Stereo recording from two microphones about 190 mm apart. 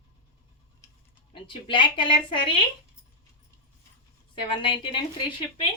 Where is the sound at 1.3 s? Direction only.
25° left (ahead or behind).